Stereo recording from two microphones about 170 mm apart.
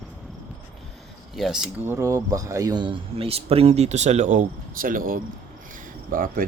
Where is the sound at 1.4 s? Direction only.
Centre (ahead or behind).